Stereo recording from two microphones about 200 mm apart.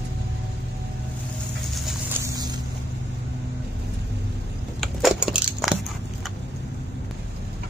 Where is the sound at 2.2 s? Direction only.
20° right (ahead or behind).